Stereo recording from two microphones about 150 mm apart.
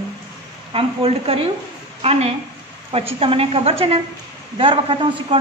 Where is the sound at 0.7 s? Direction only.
40° right (ahead or behind).